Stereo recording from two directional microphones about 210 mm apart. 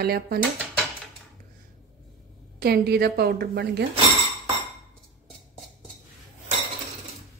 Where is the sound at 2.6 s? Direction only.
50° right (ahead or behind).